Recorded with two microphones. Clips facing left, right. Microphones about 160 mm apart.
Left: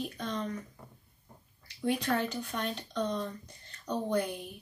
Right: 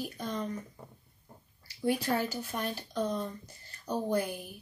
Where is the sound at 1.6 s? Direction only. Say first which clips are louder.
Right 1 dB; 5° right (ahead or behind).